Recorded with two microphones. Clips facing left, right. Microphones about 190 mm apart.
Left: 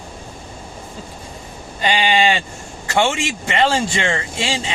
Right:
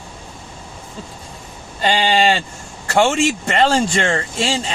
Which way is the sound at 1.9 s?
35° right (ahead or behind).